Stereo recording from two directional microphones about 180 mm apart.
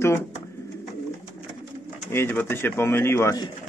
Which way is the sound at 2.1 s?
10° left (ahead or behind).